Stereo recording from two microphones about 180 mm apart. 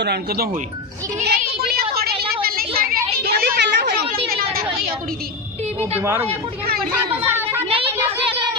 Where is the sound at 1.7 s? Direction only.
60° right (ahead or behind).